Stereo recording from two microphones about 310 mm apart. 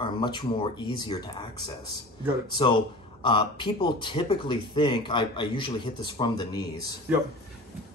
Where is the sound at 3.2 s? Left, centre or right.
Centre.